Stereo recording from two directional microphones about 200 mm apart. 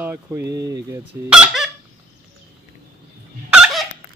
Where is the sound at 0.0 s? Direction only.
10° right (ahead or behind).